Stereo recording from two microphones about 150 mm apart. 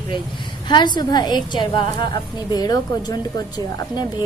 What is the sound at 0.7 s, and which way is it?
Speech, 30° left (ahead or behind).